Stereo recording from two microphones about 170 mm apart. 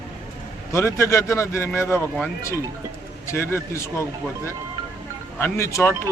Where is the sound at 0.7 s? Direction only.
15° left (ahead or behind).